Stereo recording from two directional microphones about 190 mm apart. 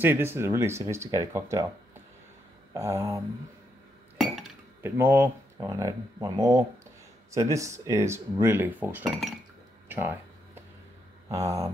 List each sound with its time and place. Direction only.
0.0 s speech: 10° right (ahead or behind)
2.7 s speech: 15° right (ahead or behind)
4.8 s speech: 10° right (ahead or behind)
9.8 s a sound: 10° right (ahead or behind)
11.2 s speech: 15° right (ahead or behind)